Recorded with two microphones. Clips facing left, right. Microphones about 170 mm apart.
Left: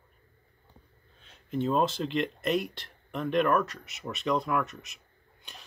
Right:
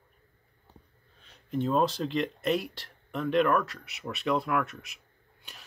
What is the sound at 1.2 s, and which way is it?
Speech, centre (ahead or behind).